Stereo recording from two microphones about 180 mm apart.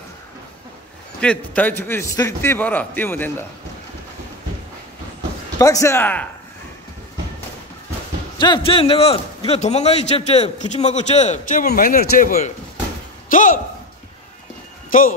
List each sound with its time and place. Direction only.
1.2 s a man's voice: 5° left (ahead or behind)
5.6 s a man's voice: 15° left (ahead or behind)
8.4 s a man's voice: 25° left (ahead or behind)
11.6 s speech: 55° left (ahead or behind)
14.9 s speech: 50° left (ahead or behind)